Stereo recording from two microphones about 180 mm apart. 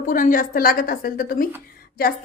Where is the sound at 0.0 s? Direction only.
45° left (ahead or behind).